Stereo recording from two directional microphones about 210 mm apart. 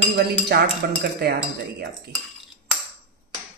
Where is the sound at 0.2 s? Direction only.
50° right (ahead or behind).